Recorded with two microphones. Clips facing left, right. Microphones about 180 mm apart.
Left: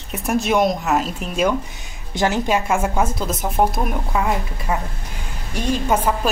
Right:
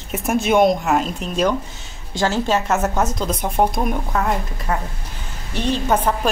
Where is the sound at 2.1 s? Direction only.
15° left (ahead or behind).